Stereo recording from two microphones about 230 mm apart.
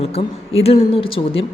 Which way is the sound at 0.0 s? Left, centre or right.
Left.